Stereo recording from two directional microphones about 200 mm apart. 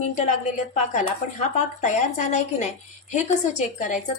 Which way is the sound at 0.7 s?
35° left (ahead or behind).